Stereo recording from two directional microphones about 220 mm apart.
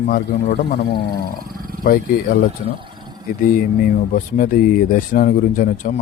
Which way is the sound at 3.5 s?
40° left (ahead or behind).